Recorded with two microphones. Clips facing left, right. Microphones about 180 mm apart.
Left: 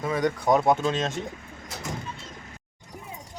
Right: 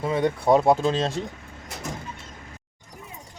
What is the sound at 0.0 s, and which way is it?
Speech, 30° right (ahead or behind).